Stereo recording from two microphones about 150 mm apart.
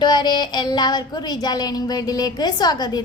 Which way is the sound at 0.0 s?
30° left (ahead or behind).